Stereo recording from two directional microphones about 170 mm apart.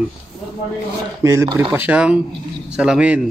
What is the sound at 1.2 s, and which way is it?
Speech, 15° right (ahead or behind).